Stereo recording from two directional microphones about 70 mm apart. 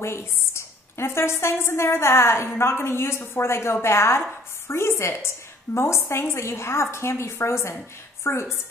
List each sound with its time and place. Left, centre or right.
0.0 s a woman's voice: left